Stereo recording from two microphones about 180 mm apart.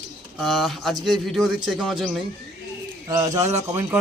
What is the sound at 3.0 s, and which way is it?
Speech, 20° right (ahead or behind).